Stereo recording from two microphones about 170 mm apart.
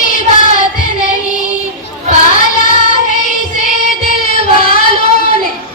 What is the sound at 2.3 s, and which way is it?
Music, 50° left (ahead or behind).